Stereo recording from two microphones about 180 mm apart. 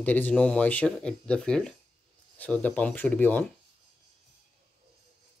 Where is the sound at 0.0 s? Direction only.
10° left (ahead or behind).